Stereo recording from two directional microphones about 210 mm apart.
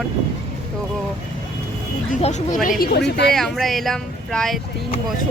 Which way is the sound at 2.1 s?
35° left (ahead or behind).